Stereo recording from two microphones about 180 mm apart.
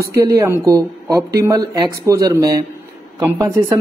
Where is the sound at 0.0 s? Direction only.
20° right (ahead or behind).